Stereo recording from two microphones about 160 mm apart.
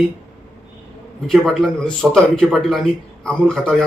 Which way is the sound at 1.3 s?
5° left (ahead or behind).